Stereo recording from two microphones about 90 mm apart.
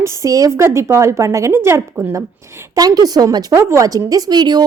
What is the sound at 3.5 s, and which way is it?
Speech, 35° right (ahead or behind).